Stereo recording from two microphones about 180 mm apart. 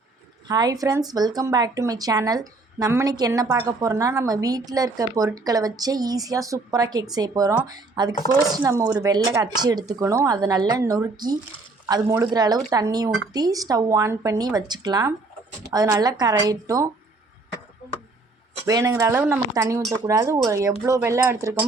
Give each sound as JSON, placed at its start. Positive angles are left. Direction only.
{"t": 0.4, "sound": "speech", "side_deg": -20}
{"t": 18.6, "sound": "speech", "side_deg": -15}